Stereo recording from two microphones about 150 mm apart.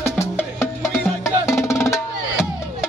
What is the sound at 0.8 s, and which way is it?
Music, 5° left (ahead or behind).